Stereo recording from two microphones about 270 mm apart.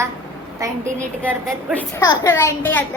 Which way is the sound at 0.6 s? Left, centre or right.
Centre.